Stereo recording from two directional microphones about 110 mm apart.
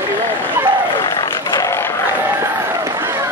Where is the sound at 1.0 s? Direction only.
35° left (ahead or behind).